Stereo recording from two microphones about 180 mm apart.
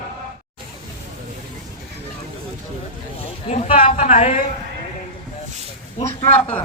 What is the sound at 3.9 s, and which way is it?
Speech, 40° left (ahead or behind).